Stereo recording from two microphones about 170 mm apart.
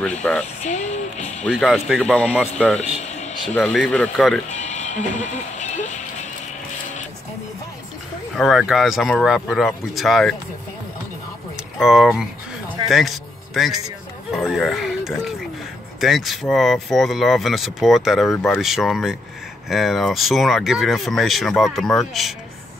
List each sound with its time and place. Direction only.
0.2 s speech: 5° left (ahead or behind)
0.7 s speech: 45° left (ahead or behind)
1.4 s speech: 5° left (ahead or behind)
2.8 s a sound: 40° left (ahead or behind)
3.5 s speech: 5° left (ahead or behind)
4.5 s a sound: 45° left (ahead or behind)
8.4 s speech: centre (ahead or behind)
11.8 s speech: centre (ahead or behind)
12.8 s a sound: centre (ahead or behind)
14.3 s speech: centre (ahead or behind)